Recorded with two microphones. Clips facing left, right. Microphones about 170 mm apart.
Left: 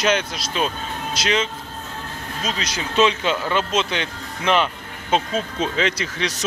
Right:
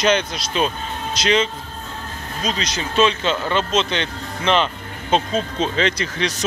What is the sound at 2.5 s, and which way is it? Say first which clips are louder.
Speech: right 3 dB; 5° left (ahead or behind).